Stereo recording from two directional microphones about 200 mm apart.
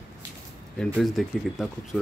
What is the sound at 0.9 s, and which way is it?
Speech, centre (ahead or behind).